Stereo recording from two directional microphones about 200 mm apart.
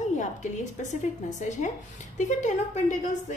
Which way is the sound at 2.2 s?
35° left (ahead or behind).